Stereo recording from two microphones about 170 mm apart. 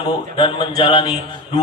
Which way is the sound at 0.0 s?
30° left (ahead or behind).